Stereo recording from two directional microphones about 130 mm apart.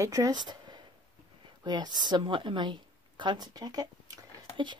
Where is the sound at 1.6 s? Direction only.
35° right (ahead or behind).